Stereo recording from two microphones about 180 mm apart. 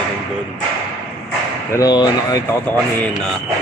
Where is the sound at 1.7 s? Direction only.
20° left (ahead or behind).